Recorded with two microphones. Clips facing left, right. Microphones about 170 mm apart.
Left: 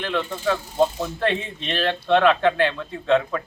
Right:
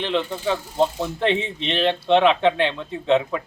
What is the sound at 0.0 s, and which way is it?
A man's voice, 20° right (ahead or behind).